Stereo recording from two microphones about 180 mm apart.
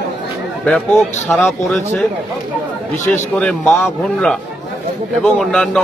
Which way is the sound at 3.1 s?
5° left (ahead or behind).